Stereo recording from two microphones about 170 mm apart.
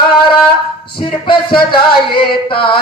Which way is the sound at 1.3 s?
30° left (ahead or behind).